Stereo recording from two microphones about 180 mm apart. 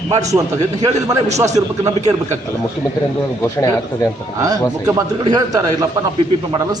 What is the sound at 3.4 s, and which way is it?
Speech, 20° left (ahead or behind).